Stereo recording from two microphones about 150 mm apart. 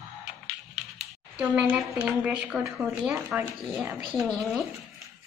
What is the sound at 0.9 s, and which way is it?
A woman's voice, 5° right (ahead or behind).